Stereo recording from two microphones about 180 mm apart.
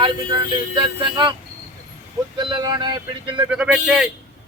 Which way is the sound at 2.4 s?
25° right (ahead or behind).